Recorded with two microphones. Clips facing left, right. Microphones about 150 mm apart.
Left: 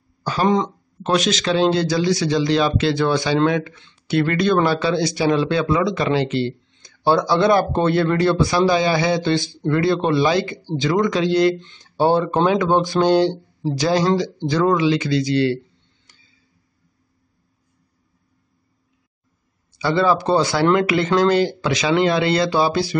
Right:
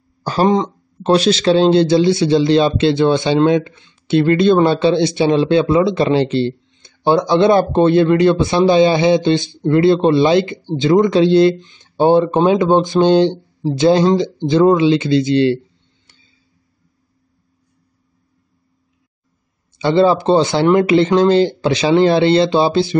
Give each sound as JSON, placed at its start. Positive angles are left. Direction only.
{"t": 0.2, "sound": "speech", "side_deg": -40}
{"t": 19.8, "sound": "speech", "side_deg": -25}